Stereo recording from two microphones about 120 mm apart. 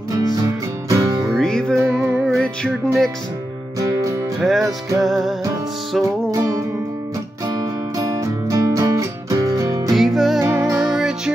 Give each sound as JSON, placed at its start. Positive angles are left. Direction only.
{"t": 0.1, "sound": "music", "side_deg": -25}
{"t": 1.3, "sound": "music", "side_deg": 5}
{"t": 4.4, "sound": "music", "side_deg": 0}
{"t": 7.4, "sound": "music", "side_deg": -30}
{"t": 9.9, "sound": "music", "side_deg": 0}
{"t": 10.4, "sound": "music", "side_deg": -25}
{"t": 10.8, "sound": "music", "side_deg": -5}